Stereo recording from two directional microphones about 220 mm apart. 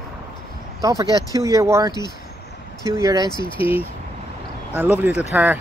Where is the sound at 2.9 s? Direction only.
15° right (ahead or behind).